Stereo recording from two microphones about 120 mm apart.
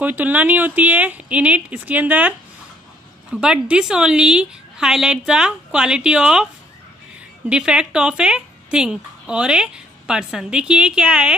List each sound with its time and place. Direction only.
0.0 s speech: 15° right (ahead or behind)
3.3 s speech: 10° right (ahead or behind)
7.4 s speech: 5° right (ahead or behind)